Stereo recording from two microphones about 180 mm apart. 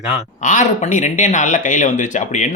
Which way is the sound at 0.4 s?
45° left (ahead or behind).